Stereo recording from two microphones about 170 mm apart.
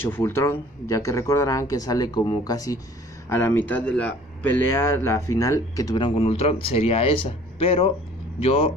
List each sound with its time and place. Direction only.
0.0 s speech: 15° left (ahead or behind); by 8.7 s 35° left (ahead or behind)